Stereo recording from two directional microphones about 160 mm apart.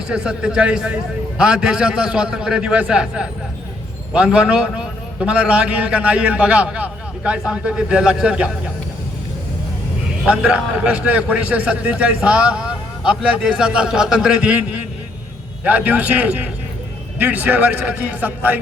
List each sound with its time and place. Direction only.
0.1 s a man's voice: 5° right (ahead or behind)
10.2 s a man's voice: 5° right (ahead or behind)